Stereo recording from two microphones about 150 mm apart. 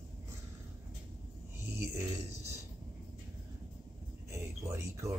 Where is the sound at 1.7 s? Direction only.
15° right (ahead or behind).